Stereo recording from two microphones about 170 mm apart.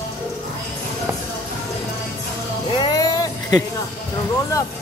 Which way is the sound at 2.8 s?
20° left (ahead or behind).